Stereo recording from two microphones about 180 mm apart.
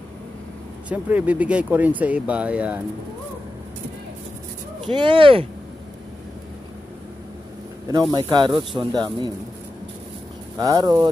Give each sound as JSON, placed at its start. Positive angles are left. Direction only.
{"t": 0.8, "sound": "speech", "side_deg": -10}
{"t": 4.8, "sound": "speech", "side_deg": -25}
{"t": 8.1, "sound": "speech", "side_deg": -25}
{"t": 10.6, "sound": "speech", "side_deg": -20}